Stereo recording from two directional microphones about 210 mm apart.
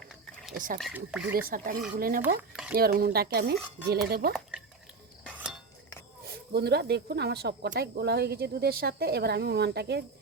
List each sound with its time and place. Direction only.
0.8 s speech: 5° right (ahead or behind)
1.3 s speech: 45° right (ahead or behind)
2.5 s a sound: 5° right (ahead or behind)
2.7 s speech: 45° right (ahead or behind)
5.3 s a sound: 5° right (ahead or behind)
6.2 s speech: 50° right (ahead or behind)